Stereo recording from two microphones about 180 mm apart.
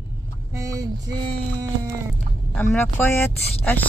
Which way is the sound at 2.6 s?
10° left (ahead or behind).